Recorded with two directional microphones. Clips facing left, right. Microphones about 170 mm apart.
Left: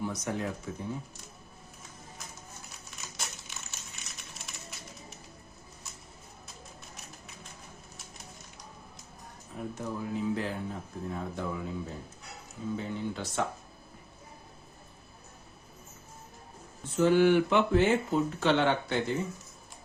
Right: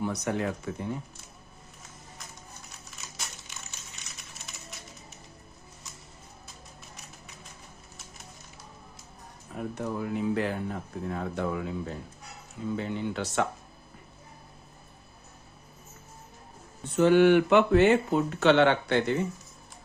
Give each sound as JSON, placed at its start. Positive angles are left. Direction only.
{"t": 0.0, "sound": "speech", "side_deg": -65}
{"t": 3.2, "sound": "crushing", "side_deg": 0}
{"t": 9.7, "sound": "speech", "side_deg": -65}
{"t": 17.0, "sound": "speech", "side_deg": -65}